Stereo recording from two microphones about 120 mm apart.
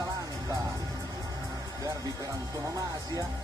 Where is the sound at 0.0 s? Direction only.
30° right (ahead or behind).